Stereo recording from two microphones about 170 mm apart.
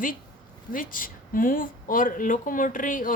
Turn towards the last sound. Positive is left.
turn(degrees=50)  # may be behind; listen again after turning